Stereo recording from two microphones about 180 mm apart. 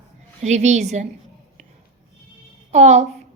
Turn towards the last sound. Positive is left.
turn(degrees=-40)  # may be behind; listen again after turning